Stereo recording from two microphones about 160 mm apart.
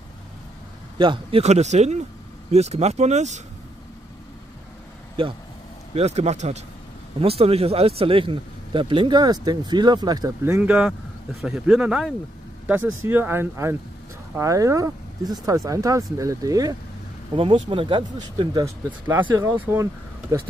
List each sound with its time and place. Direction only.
0.9 s speech: 30° right (ahead or behind)
1.4 s speech: 45° right (ahead or behind)
5.2 s speech: 35° right (ahead or behind)
10.4 s speech: 10° right (ahead or behind)
17.3 s speech: 35° right (ahead or behind)
18.9 s speech: 15° right (ahead or behind)